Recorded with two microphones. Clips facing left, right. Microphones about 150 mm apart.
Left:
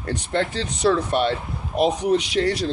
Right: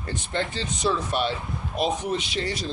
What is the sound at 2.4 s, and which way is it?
Speech, 55° left (ahead or behind).